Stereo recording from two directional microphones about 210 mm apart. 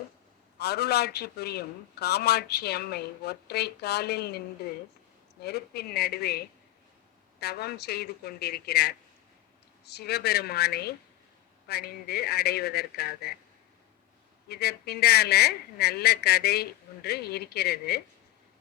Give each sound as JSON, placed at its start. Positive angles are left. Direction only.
{"t": 0.6, "sound": "a man's voice", "side_deg": 50}
{"t": 14.4, "sound": "a man's voice", "side_deg": 50}